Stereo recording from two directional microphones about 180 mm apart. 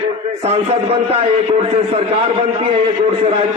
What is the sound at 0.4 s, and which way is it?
A man's voice, 35° right (ahead or behind).